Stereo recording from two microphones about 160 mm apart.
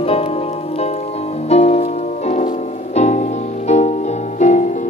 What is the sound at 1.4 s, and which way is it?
Music, 40° left (ahead or behind).